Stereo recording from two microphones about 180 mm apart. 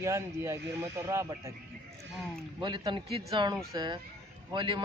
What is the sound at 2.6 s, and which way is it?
A man's voice, 25° right (ahead or behind).